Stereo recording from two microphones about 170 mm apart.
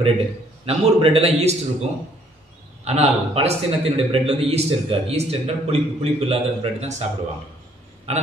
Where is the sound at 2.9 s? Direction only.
40° right (ahead or behind).